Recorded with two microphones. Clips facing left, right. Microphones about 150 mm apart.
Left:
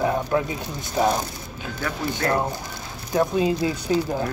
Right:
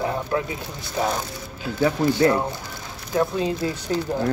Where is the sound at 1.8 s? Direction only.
20° right (ahead or behind).